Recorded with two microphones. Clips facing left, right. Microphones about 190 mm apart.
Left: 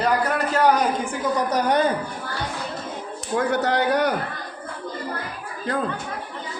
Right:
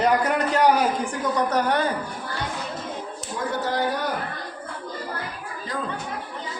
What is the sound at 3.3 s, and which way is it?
Speech, 70° left (ahead or behind).